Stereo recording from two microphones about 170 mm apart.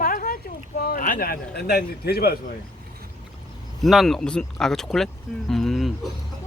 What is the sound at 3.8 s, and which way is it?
Speech, centre (ahead or behind).